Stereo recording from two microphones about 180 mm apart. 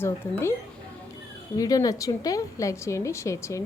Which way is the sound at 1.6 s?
20° left (ahead or behind).